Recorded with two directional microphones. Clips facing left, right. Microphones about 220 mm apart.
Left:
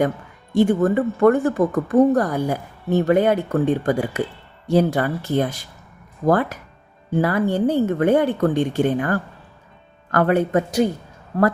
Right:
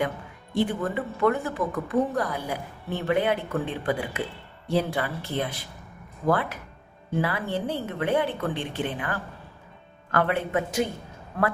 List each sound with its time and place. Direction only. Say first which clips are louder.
0.5 s a woman's voice: left 9 dB; 45° left (ahead or behind)